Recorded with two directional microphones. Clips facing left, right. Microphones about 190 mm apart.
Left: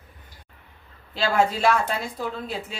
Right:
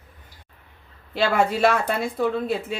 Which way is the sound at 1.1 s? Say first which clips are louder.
Right 1 dB; 60° right (ahead or behind).